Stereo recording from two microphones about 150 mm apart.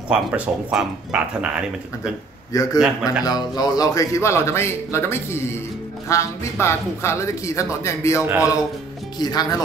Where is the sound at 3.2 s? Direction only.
25° left (ahead or behind).